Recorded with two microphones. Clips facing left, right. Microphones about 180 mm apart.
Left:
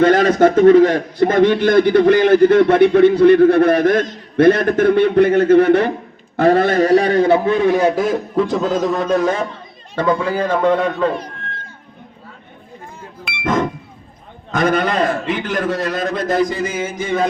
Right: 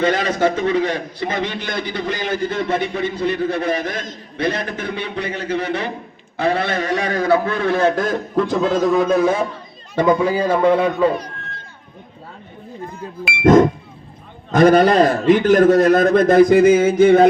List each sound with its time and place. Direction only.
0.0 s a man's voice: 50° left (ahead or behind); by 11.1 s 10° right (ahead or behind)
13.4 s music: 45° right (ahead or behind)
14.5 s a man's voice: 35° right (ahead or behind); by 17.2 s 60° right (ahead or behind)